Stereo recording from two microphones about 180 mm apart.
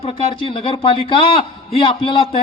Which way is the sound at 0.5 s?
30° left (ahead or behind).